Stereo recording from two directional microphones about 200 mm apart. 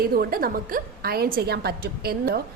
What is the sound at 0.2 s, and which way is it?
A woman's voice, 50° right (ahead or behind).